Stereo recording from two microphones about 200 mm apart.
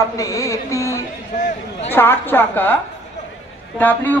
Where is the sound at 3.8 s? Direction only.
10° left (ahead or behind).